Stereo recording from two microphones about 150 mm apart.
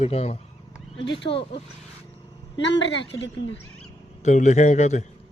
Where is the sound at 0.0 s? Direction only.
45° left (ahead or behind).